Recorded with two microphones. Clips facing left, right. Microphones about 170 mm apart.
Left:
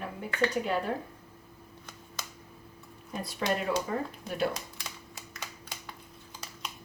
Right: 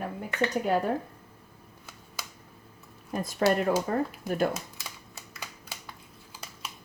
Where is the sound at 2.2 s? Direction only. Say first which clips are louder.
Right 1 dB; 10° right (ahead or behind).